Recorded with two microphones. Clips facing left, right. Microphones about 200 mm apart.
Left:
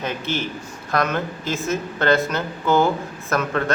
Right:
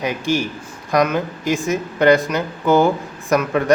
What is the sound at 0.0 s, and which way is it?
Speech, 15° right (ahead or behind).